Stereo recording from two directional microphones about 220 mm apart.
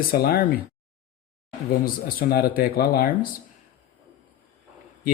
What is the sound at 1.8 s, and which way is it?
Speech, 40° left (ahead or behind).